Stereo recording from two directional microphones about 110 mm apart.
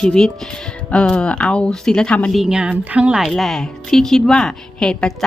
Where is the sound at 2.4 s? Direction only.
5° right (ahead or behind).